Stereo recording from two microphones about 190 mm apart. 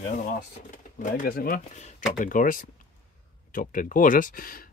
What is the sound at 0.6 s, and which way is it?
Speech, 40° left (ahead or behind).